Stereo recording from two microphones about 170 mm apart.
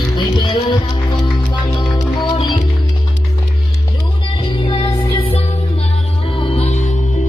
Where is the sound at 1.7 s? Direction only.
25° left (ahead or behind).